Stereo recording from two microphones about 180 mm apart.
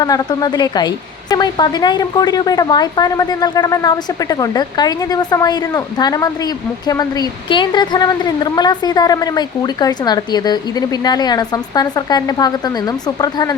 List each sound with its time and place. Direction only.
0.0 s a woman's voice: 20° left (ahead or behind)